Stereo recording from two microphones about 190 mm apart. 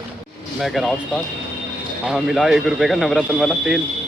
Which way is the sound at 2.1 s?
Centre (ahead or behind).